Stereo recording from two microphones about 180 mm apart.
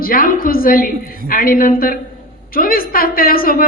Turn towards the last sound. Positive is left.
turn(degrees=55)  # may be behind; listen again after turning